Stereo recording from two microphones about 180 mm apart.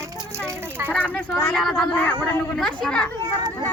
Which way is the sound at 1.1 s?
10° left (ahead or behind).